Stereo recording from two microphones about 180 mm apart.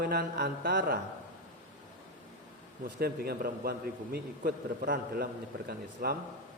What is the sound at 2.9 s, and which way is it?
A man's voice, 55° right (ahead or behind).